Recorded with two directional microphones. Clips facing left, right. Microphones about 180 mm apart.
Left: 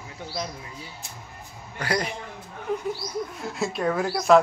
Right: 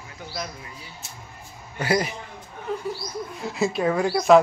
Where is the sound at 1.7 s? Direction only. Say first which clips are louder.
Right 4 dB; 5° right (ahead or behind).